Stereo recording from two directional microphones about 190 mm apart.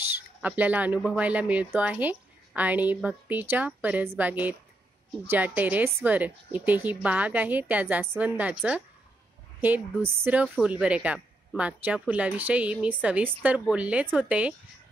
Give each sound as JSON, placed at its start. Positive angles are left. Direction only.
{"t": 0.4, "sound": "speech", "side_deg": -10}